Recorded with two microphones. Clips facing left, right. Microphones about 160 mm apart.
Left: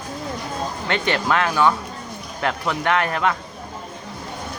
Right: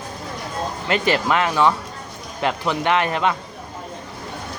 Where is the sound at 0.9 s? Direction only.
5° right (ahead or behind).